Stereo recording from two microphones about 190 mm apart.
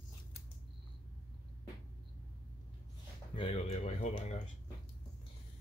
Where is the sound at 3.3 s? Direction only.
30° left (ahead or behind).